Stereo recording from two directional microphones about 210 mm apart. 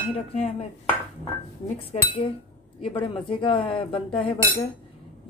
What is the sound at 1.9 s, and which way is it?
Speech, 25° left (ahead or behind).